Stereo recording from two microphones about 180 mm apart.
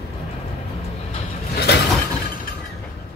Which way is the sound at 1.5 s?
65° left (ahead or behind).